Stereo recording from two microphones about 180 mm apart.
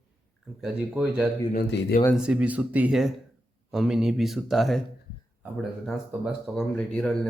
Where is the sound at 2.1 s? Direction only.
5° right (ahead or behind).